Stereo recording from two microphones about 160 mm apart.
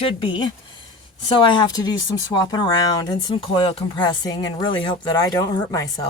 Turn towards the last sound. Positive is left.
turn(degrees=20)  # may be behind; listen again after turning